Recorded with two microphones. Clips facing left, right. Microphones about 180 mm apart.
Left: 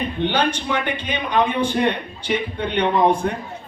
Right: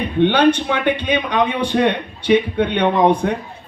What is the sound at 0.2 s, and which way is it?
A man's voice, 65° right (ahead or behind).